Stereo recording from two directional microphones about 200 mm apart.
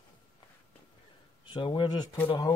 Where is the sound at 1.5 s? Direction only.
25° left (ahead or behind).